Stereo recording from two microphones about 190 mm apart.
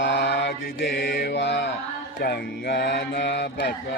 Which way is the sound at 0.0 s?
65° left (ahead or behind).